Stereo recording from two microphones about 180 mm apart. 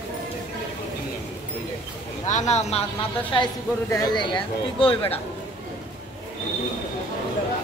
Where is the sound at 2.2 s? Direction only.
40° left (ahead or behind).